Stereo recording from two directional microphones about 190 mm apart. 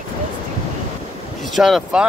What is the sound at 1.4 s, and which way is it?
Speech, centre (ahead or behind).